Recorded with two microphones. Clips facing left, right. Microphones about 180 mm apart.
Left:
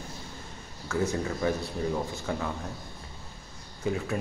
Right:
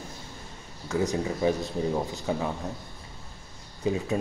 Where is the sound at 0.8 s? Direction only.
20° right (ahead or behind).